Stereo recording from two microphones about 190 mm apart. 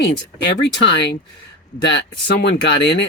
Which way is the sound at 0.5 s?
65° left (ahead or behind).